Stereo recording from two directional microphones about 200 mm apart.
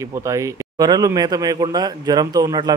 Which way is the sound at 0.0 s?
15° right (ahead or behind).